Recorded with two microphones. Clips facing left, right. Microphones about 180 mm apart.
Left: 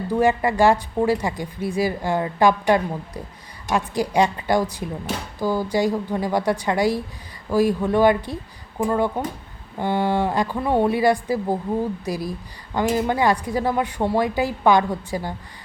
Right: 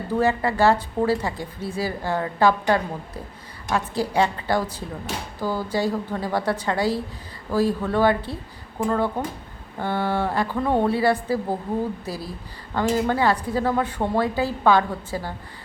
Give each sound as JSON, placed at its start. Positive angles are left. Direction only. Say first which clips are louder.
{"t": 0.1, "sound": "speech", "louder": "left 2 dB", "side_deg": 15}